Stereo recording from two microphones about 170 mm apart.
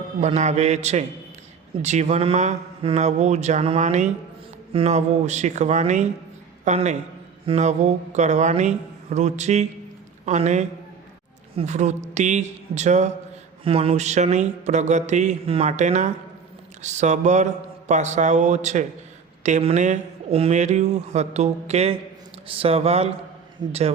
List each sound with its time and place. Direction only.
0.2 s speech: 40° right (ahead or behind)